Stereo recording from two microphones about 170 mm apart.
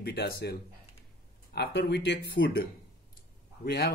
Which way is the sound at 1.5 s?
85° left.